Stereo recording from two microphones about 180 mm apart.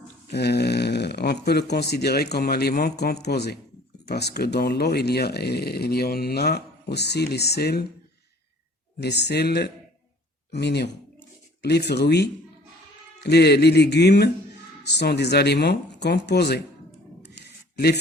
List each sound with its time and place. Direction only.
0.3 s speech: 65° left (ahead or behind)
9.0 s speech: 70° left (ahead or behind)
17.7 s speech: 60° left (ahead or behind)